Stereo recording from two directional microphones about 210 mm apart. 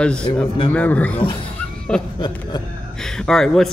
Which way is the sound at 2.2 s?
20° left (ahead or behind).